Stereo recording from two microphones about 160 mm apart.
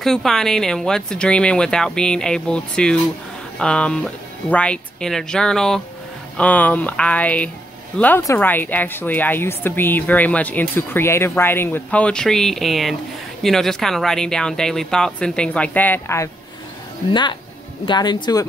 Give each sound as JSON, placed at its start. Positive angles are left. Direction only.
{"t": 0.0, "sound": "speech", "side_deg": 0}
{"t": 17.1, "sound": "speech", "side_deg": 30}